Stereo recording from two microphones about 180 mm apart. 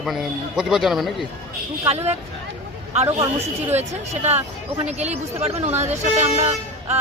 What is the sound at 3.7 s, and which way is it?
Speech, 35° right (ahead or behind).